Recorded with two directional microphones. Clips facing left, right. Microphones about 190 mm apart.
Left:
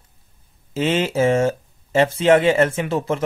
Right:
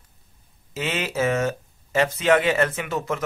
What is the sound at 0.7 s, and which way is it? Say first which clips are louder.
Speech: left 7 dB; 30° left (ahead or behind).